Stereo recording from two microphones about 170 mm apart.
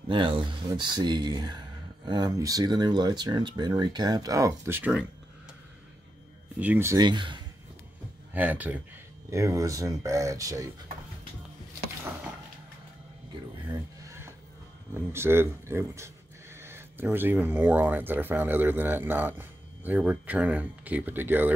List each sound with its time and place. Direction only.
0.1 s speech: 30° right (ahead or behind); by 5.0 s 10° right (ahead or behind)
6.6 s speech: 10° right (ahead or behind)
7.0 s speech: 25° right (ahead or behind)
8.3 s speech: 10° right (ahead or behind)
13.7 s a sound: 15° right (ahead or behind)
15.0 s speech: 15° right (ahead or behind)